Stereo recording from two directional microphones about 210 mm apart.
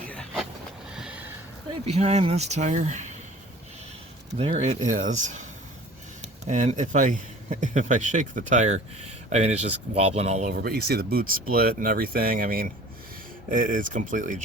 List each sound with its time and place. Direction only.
0.1 s vehicle: 5° left (ahead or behind)
1.8 s speech: 30° right (ahead or behind)
4.4 s speech: 30° right (ahead or behind)
10.5 s speech: 45° right (ahead or behind)